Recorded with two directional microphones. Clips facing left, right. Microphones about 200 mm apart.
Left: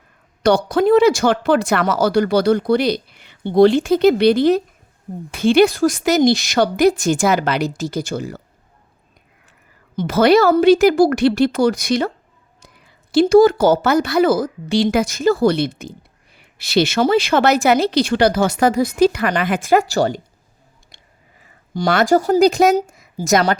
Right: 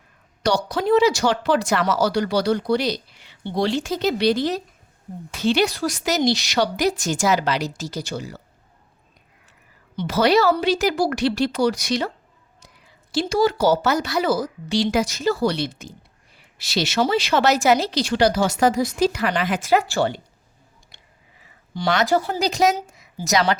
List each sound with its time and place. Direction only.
0.4 s a woman's voice: 55° left (ahead or behind)
9.9 s a woman's voice: 50° left (ahead or behind)
21.4 s speech: 50° left (ahead or behind)